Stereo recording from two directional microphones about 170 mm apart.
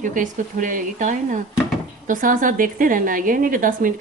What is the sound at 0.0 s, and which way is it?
A woman's voice, 50° right (ahead or behind).